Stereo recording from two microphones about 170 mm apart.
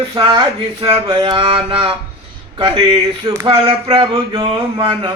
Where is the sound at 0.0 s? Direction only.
25° right (ahead or behind).